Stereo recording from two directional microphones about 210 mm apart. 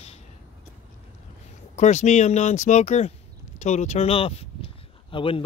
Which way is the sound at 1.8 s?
35° left (ahead or behind).